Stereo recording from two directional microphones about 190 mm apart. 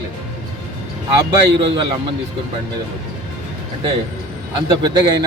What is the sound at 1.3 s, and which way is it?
Speech, 25° right (ahead or behind).